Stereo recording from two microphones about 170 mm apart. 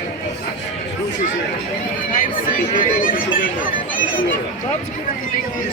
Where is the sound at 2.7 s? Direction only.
55° left (ahead or behind).